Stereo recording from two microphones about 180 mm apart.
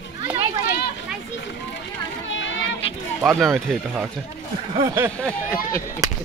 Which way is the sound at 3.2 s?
Centre (ahead or behind).